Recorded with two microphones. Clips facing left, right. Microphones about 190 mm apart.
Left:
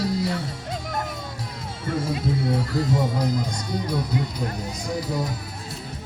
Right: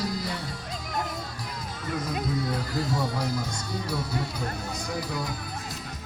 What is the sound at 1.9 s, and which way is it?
Speech, 25° left (ahead or behind).